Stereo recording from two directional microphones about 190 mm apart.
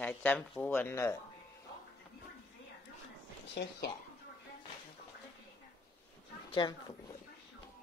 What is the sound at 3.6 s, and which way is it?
Speech, 60° left (ahead or behind).